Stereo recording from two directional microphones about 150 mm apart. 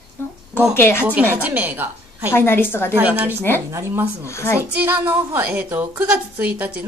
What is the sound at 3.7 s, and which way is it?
Speech, 15° right (ahead or behind).